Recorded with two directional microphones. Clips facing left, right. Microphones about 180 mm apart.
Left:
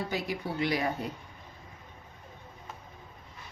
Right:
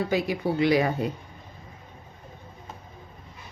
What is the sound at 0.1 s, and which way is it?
Speech, 90° right.